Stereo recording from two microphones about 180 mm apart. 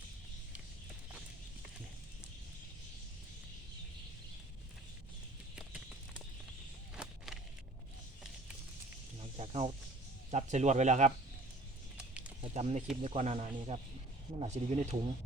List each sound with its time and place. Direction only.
5.5 s clip-clop: 5° right (ahead or behind)
6.9 s a sound: 5° right (ahead or behind)
9.4 s snake: 35° right (ahead or behind)
10.3 s speech: 40° right (ahead or behind)
12.4 s a sound: 35° right (ahead or behind)
13.0 s speech: 40° right (ahead or behind)